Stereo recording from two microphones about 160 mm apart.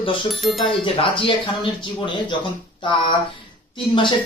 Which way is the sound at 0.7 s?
35° left (ahead or behind).